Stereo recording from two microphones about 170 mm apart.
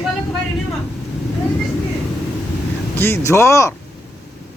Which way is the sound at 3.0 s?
15° left (ahead or behind).